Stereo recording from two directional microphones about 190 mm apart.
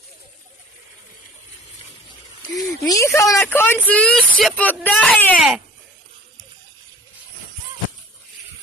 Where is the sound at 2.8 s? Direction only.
15° left (ahead or behind).